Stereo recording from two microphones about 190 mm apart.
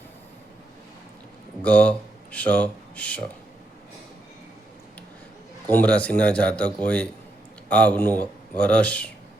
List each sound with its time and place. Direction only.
1.6 s speech: 5° left (ahead or behind)
5.6 s a man's voice: 10° left (ahead or behind)